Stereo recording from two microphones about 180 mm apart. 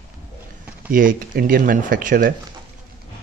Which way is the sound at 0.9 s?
50° right (ahead or behind).